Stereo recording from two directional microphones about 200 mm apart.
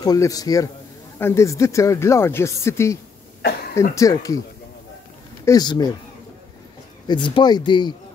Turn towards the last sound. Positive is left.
turn(degrees=20)  # may be behind; listen again after turning